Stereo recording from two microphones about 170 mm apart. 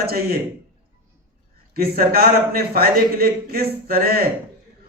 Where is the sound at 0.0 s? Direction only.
65° right (ahead or behind).